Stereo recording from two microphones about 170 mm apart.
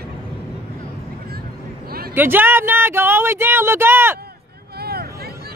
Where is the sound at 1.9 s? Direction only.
65° right (ahead or behind).